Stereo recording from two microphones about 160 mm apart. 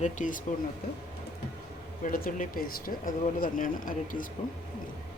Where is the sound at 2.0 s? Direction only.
60° left (ahead or behind).